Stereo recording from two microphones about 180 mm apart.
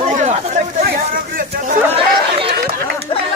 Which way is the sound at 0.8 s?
50° right (ahead or behind).